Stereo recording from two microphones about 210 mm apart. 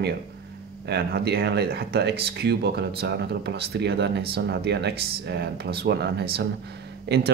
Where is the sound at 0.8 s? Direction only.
50° right (ahead or behind).